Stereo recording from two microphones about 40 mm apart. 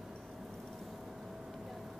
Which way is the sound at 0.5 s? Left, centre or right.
Centre.